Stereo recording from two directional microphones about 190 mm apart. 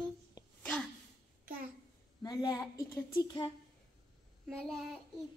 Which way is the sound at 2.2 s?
20° left (ahead or behind).